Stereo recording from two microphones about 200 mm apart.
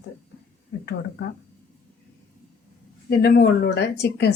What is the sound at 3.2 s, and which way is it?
A woman's voice, 55° left (ahead or behind).